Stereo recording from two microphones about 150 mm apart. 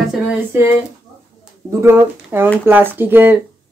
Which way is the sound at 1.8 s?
15° right (ahead or behind).